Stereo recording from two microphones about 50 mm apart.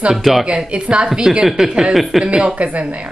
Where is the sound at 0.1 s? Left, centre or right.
Centre.